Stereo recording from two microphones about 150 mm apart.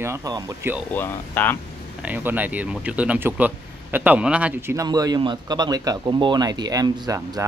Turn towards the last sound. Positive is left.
turn(degrees=-25)  # may be behind; listen again after turning